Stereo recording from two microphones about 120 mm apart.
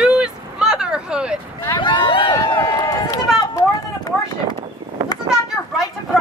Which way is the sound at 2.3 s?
30° left (ahead or behind).